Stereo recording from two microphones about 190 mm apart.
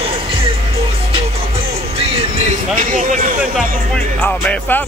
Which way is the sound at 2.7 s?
45° right (ahead or behind).